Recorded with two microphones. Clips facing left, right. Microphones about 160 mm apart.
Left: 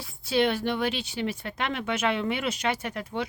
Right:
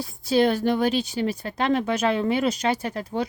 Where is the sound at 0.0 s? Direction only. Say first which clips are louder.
Right 4 dB; 40° right (ahead or behind).